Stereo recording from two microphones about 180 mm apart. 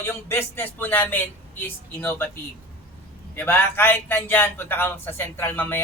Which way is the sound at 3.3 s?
10° left (ahead or behind).